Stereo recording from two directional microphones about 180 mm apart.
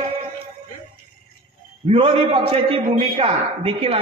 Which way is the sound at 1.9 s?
30° right (ahead or behind).